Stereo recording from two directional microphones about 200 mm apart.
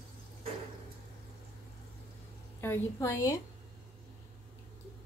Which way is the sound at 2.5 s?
10° left (ahead or behind).